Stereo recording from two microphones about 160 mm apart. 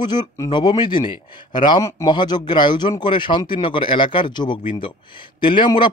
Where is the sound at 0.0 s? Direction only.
25° left (ahead or behind).